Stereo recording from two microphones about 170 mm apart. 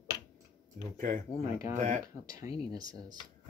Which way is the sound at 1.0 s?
50° right (ahead or behind).